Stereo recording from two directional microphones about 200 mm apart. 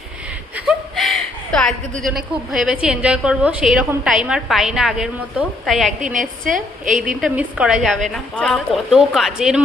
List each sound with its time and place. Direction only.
0.5 s a sound: 5° right (ahead or behind)
2.5 s a woman's voice: 5° right (ahead or behind)
6.5 s a woman's voice: 40° right (ahead or behind)
7.0 s a woman's voice: 5° right (ahead or behind)